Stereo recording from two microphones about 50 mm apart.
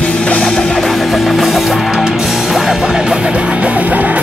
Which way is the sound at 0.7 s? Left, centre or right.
Centre.